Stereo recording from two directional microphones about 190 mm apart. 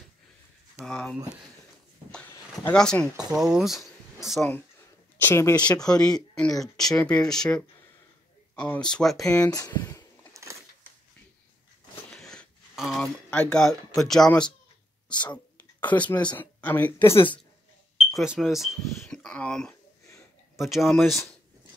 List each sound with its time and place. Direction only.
0.7 s speech: 5° left (ahead or behind)
2.0 s a sound: 5° left (ahead or behind)
2.7 s speech: 5° left (ahead or behind)
5.2 s speech: 15° left (ahead or behind)
9.5 s speech: 20° left (ahead or behind)
10.3 s a sound: 15° right (ahead or behind)
12.1 s a sound: centre (ahead or behind)
16.3 s speech: 10° left (ahead or behind)
18.1 s speech: centre (ahead or behind)